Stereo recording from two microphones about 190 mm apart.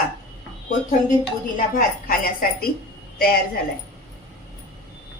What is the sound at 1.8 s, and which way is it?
Speech, 50° left (ahead or behind).